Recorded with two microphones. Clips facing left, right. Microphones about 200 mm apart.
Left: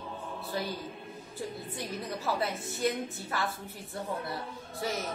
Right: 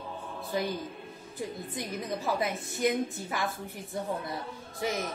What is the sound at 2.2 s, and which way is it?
A woman's voice, 15° right (ahead or behind).